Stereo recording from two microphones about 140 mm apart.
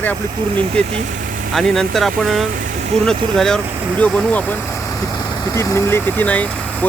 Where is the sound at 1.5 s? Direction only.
5° left (ahead or behind).